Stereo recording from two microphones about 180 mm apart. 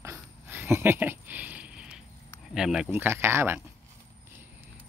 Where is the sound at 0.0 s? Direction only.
15° right (ahead or behind).